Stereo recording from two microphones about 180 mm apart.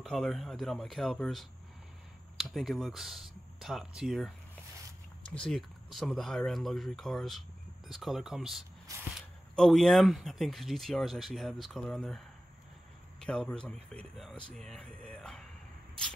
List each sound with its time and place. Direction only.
0.0 s speech: centre (ahead or behind)
5.3 s speech: 5° left (ahead or behind)
8.9 s a sound: 20° right (ahead or behind)
9.6 s speech: centre (ahead or behind)
13.2 s speech: 5° left (ahead or behind)